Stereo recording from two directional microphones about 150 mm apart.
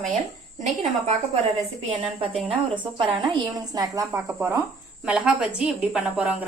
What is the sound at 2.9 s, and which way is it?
A woman's voice, 35° right (ahead or behind).